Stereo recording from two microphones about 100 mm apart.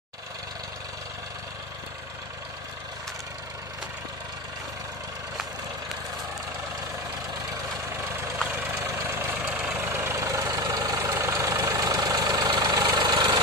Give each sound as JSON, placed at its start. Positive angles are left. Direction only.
{"t": 8.5, "sound": "vehicle", "side_deg": -15}
{"t": 8.7, "sound": "vehicle", "side_deg": -25}
{"t": 9.5, "sound": "vehicle", "side_deg": -10}
{"t": 9.8, "sound": "vehicle", "side_deg": -25}